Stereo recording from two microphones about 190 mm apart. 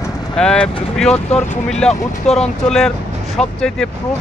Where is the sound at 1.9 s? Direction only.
35° left (ahead or behind).